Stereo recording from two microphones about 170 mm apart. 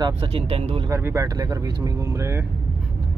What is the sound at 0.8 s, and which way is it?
Speech, 15° right (ahead or behind).